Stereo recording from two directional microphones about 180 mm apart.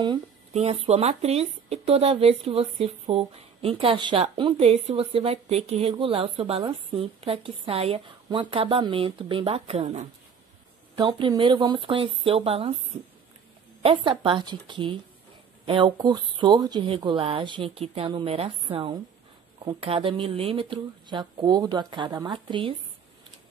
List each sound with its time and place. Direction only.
0.5 s speech: 35° right (ahead or behind)
13.8 s speech: 30° right (ahead or behind)